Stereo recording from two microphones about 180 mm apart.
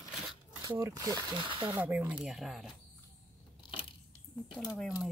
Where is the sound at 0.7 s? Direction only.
20° right (ahead or behind).